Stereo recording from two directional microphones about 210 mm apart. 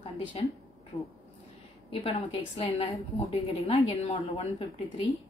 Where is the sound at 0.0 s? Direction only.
25° left (ahead or behind).